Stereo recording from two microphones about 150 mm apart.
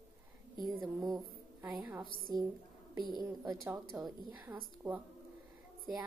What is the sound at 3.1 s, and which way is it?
Speech, 25° right (ahead or behind).